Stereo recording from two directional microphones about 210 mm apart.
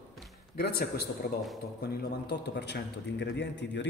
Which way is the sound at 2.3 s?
55° left (ahead or behind).